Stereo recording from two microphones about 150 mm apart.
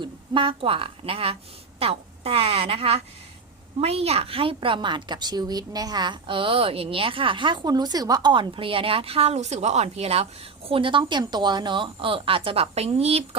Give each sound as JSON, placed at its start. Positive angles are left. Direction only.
{"t": 0.0, "sound": "a woman's voice", "side_deg": -35}